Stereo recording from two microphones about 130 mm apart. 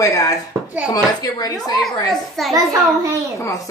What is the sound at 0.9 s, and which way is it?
Speech, 30° left (ahead or behind).